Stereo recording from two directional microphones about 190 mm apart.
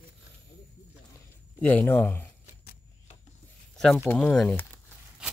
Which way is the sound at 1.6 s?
10° left (ahead or behind).